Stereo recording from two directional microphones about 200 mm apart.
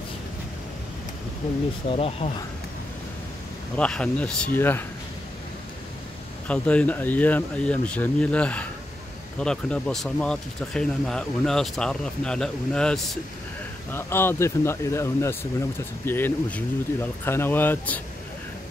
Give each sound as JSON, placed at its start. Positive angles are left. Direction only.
{"t": 1.9, "sound": "speech", "side_deg": 30}
{"t": 3.7, "sound": "speech", "side_deg": 5}
{"t": 6.4, "sound": "speech", "side_deg": 5}